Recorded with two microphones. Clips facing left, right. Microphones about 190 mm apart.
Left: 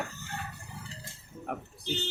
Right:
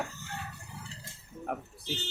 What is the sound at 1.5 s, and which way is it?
Speech, 5° right (ahead or behind).